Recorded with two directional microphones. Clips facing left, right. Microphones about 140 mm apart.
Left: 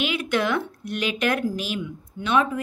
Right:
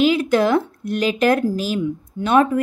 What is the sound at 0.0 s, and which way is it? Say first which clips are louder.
Speech: right 8 dB; 35° right (ahead or behind).